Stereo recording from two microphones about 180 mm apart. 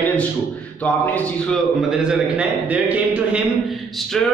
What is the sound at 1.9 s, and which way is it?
A man's voice, 5° right (ahead or behind).